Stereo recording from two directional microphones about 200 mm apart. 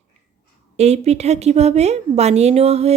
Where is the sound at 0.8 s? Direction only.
30° right (ahead or behind).